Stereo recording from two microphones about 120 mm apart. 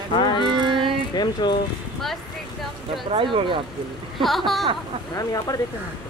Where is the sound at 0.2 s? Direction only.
40° left (ahead or behind).